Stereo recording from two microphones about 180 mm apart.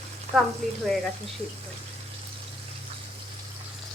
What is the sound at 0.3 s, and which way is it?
Speech, centre (ahead or behind).